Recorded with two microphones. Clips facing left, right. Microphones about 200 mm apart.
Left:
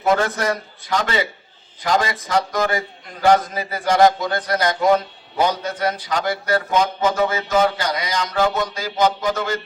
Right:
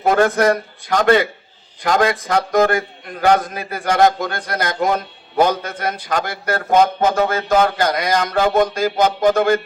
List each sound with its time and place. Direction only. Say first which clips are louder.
0.0 s speech: right 5 dB; 55° right (ahead or behind)